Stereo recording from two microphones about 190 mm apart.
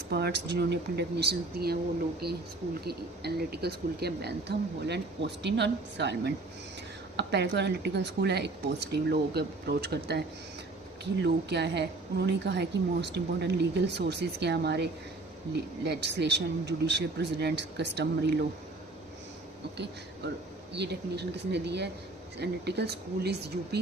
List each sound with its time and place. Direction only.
0.1 s a woman's voice: 60° right (ahead or behind)
19.7 s a woman's voice: 60° right (ahead or behind)